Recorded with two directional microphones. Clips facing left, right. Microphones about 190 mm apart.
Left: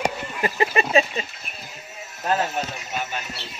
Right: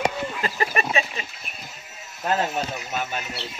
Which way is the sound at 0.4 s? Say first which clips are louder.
Left 5 dB; 20° left (ahead or behind).